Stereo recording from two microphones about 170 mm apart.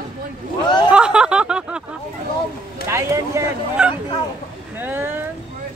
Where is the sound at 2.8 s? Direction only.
15° right (ahead or behind).